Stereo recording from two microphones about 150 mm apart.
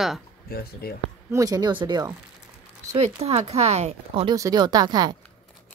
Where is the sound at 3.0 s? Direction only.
45° right (ahead or behind).